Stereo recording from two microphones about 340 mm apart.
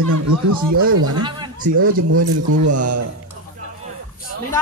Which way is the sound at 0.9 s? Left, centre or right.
Right.